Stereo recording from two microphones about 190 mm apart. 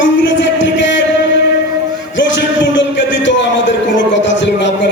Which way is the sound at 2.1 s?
75° left (ahead or behind).